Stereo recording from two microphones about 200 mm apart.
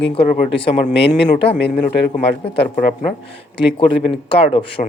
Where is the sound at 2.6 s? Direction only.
40° left (ahead or behind).